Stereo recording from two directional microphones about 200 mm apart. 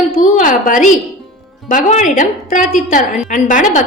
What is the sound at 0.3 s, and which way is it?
A woman's voice, 40° left (ahead or behind).